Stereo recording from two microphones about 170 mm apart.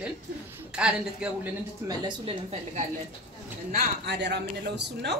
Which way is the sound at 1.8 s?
30° right (ahead or behind).